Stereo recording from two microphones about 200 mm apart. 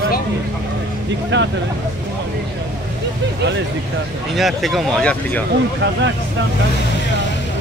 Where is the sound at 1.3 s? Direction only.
65° right (ahead or behind).